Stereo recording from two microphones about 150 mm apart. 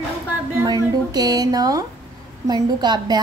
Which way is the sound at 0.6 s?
25° right (ahead or behind).